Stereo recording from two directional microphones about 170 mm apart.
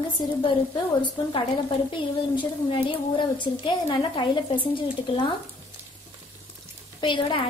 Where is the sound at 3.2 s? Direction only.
30° left (ahead or behind).